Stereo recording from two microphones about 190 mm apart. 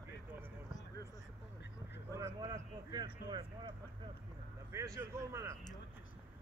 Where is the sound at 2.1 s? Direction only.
15° right (ahead or behind).